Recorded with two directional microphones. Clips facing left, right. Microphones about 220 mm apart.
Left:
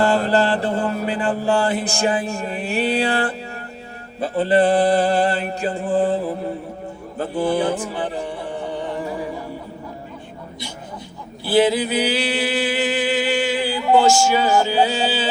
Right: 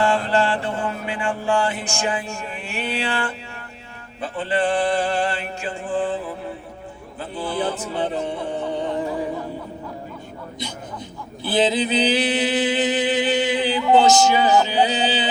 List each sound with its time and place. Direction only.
0.0 s mantra: 40° left (ahead or behind)
7.8 s music: 20° right (ahead or behind)
11.4 s a sound: 20° right (ahead or behind)